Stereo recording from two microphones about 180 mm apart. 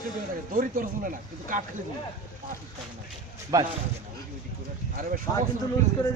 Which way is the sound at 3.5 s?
20° right (ahead or behind).